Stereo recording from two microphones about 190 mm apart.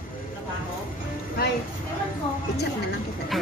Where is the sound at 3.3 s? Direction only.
Centre (ahead or behind).